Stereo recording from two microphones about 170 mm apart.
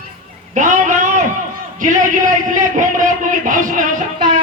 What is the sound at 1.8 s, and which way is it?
A man's voice, 50° right (ahead or behind).